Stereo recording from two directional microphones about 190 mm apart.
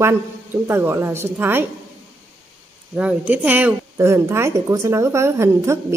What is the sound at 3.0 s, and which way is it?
A woman's voice, 5° right (ahead or behind).